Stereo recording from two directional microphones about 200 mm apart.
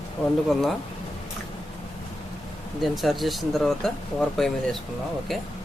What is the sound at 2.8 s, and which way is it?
Speech, centre (ahead or behind).